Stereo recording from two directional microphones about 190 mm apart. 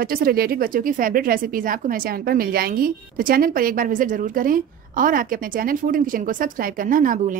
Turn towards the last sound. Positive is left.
turn(degrees=-45)  # may be behind; listen again after turning